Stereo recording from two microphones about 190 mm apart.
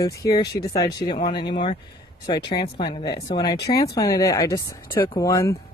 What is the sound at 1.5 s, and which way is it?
Speech, 25° left (ahead or behind).